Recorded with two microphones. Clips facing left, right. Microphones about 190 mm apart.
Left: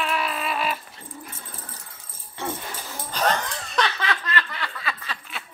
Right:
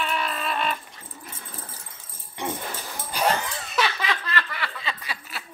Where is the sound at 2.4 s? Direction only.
15° right (ahead or behind).